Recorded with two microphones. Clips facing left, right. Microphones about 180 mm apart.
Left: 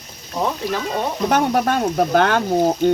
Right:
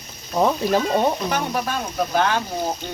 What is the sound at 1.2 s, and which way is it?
Speech, 60° left (ahead or behind).